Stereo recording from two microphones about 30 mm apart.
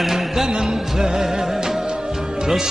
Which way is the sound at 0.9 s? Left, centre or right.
Centre.